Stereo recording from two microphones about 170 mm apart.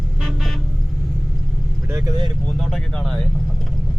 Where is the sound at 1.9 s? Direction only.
20° right (ahead or behind).